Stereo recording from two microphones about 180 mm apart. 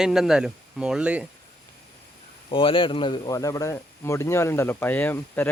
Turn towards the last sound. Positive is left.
turn(degrees=10)  # may be behind; listen again after turning